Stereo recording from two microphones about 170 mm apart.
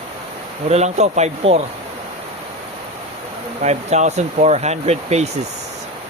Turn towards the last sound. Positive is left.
turn(degrees=-40)  # may be behind; listen again after turning